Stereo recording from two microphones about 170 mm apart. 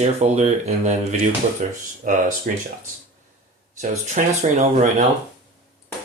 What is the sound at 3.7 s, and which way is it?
Speech, 45° right (ahead or behind).